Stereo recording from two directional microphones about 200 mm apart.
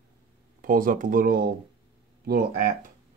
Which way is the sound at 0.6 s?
45° right (ahead or behind).